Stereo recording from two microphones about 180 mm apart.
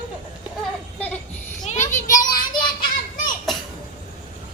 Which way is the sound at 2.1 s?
20° left (ahead or behind).